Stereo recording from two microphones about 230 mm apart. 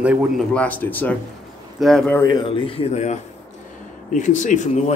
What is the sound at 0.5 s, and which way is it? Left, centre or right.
Speech, centre.